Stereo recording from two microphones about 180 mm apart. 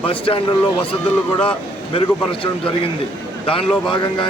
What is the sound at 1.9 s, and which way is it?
Speech, 30° left (ahead or behind).